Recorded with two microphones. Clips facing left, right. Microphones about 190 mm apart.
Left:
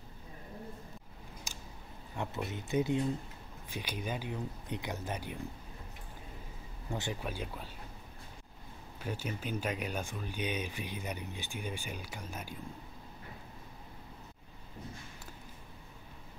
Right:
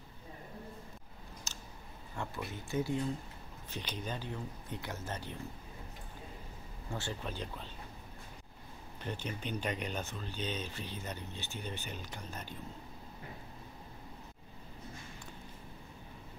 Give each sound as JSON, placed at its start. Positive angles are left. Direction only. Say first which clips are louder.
{"t": 1.5, "sound": "a sound", "louder": "left 1 dB", "side_deg": 15}
{"t": 2.1, "sound": "speech", "louder": "left 3 dB", "side_deg": 20}
{"t": 6.9, "sound": "speech", "louder": "left 2 dB", "side_deg": 15}
{"t": 9.0, "sound": "speech", "louder": "left 2 dB", "side_deg": 5}